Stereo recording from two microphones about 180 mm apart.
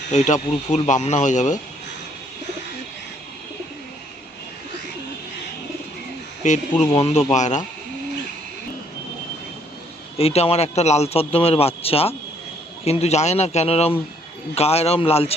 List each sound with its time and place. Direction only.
0.1 s a man's voice: 40° left (ahead or behind)
6.4 s a man's voice: 40° left (ahead or behind)
10.2 s a man's voice: 35° left (ahead or behind)